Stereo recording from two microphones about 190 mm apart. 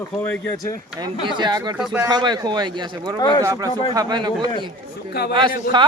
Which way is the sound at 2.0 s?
20° right (ahead or behind).